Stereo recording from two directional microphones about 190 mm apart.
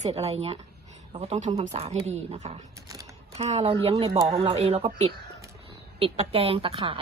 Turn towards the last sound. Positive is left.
turn(degrees=-30)  # may be behind; listen again after turning